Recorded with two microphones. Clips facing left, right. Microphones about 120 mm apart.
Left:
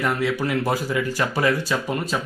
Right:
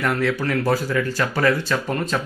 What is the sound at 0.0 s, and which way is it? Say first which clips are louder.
Speech: right 1 dB; 10° left (ahead or behind).